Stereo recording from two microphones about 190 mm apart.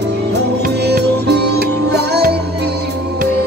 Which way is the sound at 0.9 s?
60° right (ahead or behind).